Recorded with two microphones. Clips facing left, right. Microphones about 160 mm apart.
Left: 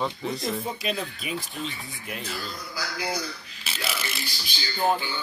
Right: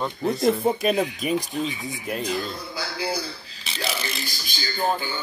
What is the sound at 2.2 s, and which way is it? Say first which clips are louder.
Speech: right 7 dB; 20° right (ahead or behind).